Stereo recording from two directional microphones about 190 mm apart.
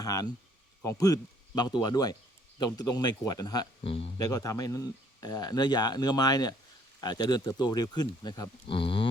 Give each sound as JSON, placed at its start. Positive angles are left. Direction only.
{"t": 0.0, "sound": "speech", "side_deg": 20}
{"t": 4.3, "sound": "speech", "side_deg": 15}